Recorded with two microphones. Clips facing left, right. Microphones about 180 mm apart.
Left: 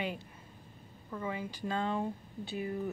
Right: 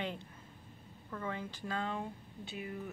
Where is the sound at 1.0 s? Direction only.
10° left (ahead or behind).